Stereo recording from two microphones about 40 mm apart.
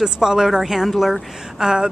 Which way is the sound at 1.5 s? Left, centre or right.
Centre.